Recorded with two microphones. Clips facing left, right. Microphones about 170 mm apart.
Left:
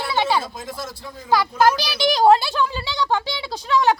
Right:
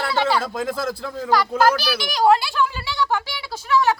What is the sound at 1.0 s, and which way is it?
Speech, 90° right.